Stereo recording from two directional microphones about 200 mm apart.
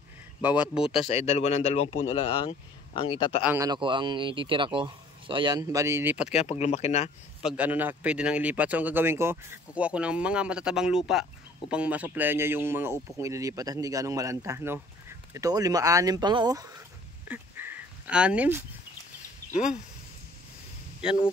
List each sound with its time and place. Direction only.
0.4 s speech: 5° right (ahead or behind)
1.0 s speech: 30° left (ahead or behind)
3.4 s a man's voice: 15° right (ahead or behind)
6.2 s speech: 30° left (ahead or behind)
7.4 s speech: 5° right (ahead or behind)
17.3 s a sound: 10° right (ahead or behind)
21.0 s speech: 5° right (ahead or behind)